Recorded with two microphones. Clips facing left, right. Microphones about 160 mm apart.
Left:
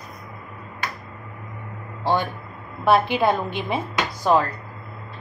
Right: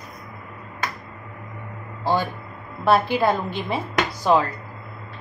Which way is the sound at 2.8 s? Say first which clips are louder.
Even; 15° left (ahead or behind).